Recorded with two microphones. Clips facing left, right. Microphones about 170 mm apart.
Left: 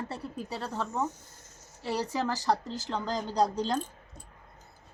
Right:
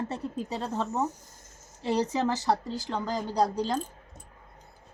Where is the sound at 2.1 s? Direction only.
20° right (ahead or behind).